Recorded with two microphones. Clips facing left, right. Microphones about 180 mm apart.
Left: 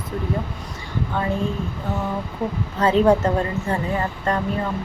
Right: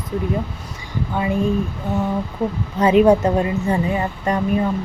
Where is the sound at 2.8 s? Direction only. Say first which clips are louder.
Right 3 dB; 15° right (ahead or behind).